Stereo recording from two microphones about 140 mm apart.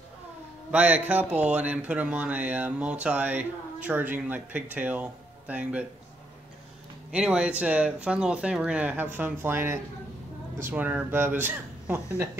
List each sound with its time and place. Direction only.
0.7 s speech: 10° right (ahead or behind)
7.1 s speech: 5° right (ahead or behind)